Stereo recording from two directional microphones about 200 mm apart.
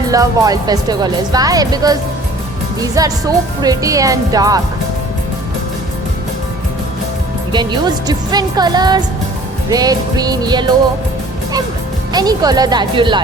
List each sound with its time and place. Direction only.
0.1 s speech: 15° right (ahead or behind)
7.5 s speech: 20° right (ahead or behind)
12.1 s speech: 20° right (ahead or behind)